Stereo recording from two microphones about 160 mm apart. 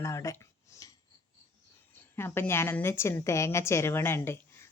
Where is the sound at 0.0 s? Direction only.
20° left (ahead or behind).